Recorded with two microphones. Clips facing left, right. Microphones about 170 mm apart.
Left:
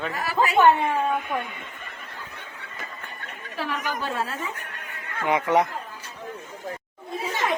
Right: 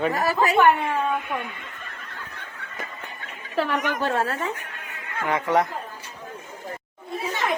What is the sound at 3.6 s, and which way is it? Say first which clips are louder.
Speech: right 5 dB; 70° right (ahead or behind).